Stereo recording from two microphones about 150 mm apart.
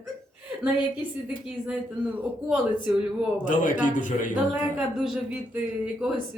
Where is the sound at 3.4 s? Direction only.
60° left (ahead or behind).